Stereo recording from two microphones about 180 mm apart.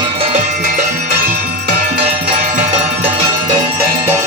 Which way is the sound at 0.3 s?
45° right (ahead or behind).